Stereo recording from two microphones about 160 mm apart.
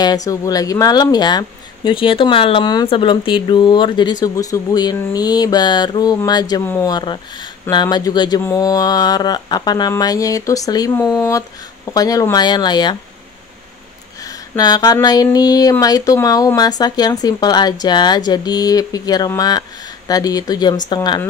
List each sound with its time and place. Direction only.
0.0 s speech: 25° left (ahead or behind)
14.6 s speech: 25° left (ahead or behind)